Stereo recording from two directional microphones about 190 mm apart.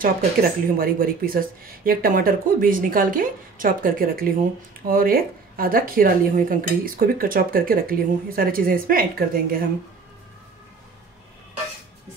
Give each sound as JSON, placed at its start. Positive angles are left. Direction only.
{"t": 0.0, "sound": "speech", "side_deg": -50}